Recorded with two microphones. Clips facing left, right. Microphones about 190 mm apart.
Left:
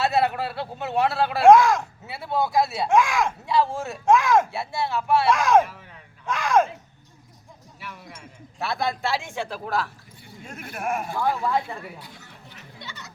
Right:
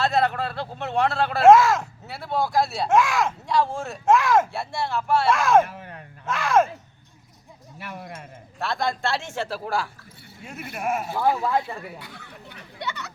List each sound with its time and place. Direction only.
0.0 s speech: 10° left (ahead or behind)
5.6 s speech: 60° right (ahead or behind)
6.2 s speech: 5° right (ahead or behind)
7.9 s speech: 55° right (ahead or behind)
8.5 s speech: 5° left (ahead or behind)
11.9 s a sound: 65° right (ahead or behind)